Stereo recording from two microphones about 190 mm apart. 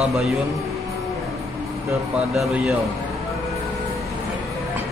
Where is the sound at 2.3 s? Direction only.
Centre (ahead or behind).